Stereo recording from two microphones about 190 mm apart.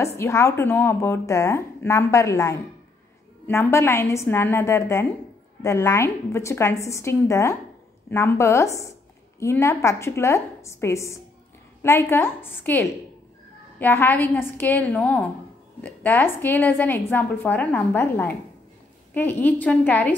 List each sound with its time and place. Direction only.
0.0 s a woman's voice: 15° left (ahead or behind)